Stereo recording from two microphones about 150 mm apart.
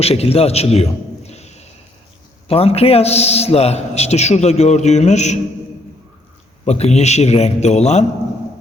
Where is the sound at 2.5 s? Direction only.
40° left (ahead or behind).